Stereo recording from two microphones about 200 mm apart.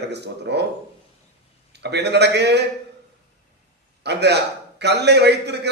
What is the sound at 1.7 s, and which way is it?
Speech, 55° right (ahead or behind).